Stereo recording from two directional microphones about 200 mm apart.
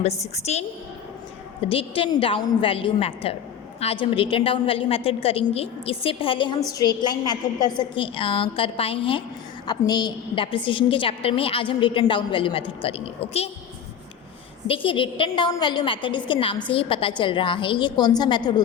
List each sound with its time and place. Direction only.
0.3 s a woman's voice: 35° left (ahead or behind)
1.6 s a woman's voice: 25° left (ahead or behind)
14.7 s a woman's voice: 25° left (ahead or behind)